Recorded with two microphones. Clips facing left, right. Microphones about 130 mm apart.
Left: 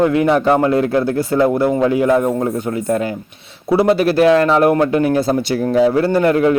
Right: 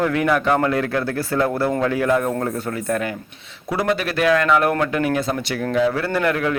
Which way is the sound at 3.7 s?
30° left (ahead or behind).